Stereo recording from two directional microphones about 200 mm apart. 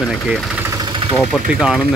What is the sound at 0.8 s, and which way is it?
Engine, 25° right (ahead or behind).